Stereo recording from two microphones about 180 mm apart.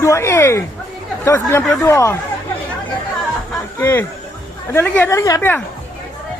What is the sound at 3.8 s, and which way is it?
A woman's voice, 10° left (ahead or behind).